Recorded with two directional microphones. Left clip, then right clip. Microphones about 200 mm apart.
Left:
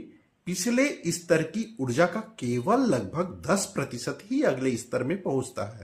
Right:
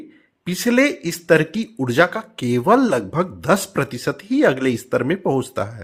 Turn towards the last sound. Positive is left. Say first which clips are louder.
# right 8 dB
turn(degrees=-45)  # may be behind; listen again after turning